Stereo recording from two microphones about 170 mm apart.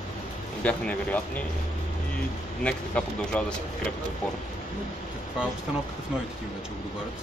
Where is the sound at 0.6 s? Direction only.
10° left (ahead or behind).